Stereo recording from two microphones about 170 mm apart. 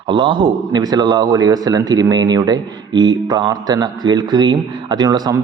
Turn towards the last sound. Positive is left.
turn(degrees=-25)  # may be behind; listen again after turning